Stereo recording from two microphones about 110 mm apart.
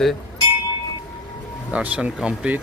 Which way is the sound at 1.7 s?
10° right (ahead or behind).